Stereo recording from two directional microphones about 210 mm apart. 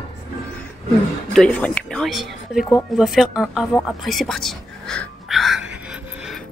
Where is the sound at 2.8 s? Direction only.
Centre (ahead or behind).